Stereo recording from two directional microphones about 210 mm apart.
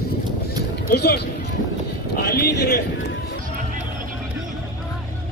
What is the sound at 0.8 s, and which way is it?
Speech, 50° left (ahead or behind).